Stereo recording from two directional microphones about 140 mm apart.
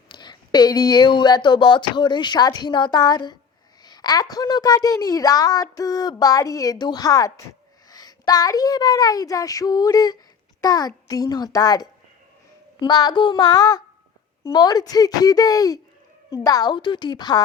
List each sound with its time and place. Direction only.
0.1 s speech: 30° left (ahead or behind)